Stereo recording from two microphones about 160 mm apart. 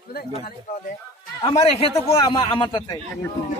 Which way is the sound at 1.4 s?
35° left (ahead or behind).